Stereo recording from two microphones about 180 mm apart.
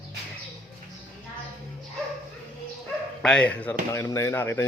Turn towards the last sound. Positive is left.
turn(degrees=15)  # may be behind; listen again after turning